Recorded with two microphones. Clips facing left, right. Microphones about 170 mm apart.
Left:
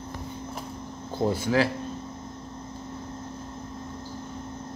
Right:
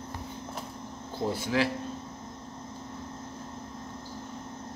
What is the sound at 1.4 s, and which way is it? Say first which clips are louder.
Speech: left 3 dB; 40° left (ahead or behind).